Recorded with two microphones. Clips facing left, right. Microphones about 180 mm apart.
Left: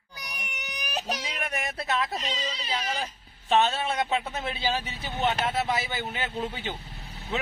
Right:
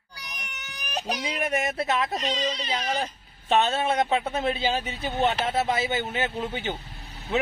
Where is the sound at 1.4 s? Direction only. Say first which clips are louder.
Right 6 dB; 25° right (ahead or behind).